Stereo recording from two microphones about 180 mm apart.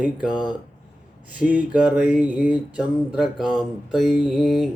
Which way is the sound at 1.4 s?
5° right (ahead or behind).